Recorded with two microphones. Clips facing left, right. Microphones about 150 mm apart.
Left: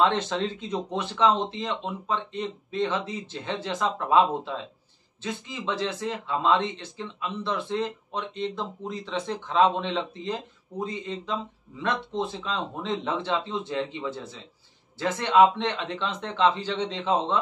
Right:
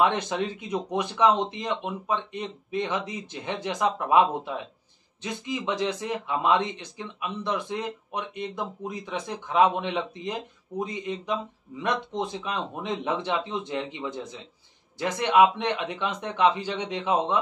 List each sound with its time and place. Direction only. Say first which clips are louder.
0.0 s speech: even; 15° right (ahead or behind)